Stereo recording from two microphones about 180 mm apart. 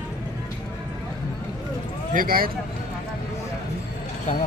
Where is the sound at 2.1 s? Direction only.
55° right (ahead or behind).